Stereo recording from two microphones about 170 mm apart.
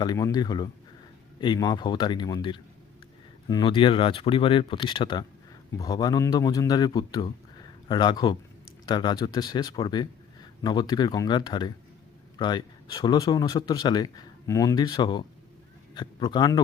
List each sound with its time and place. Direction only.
0.0 s speech: 25° left (ahead or behind)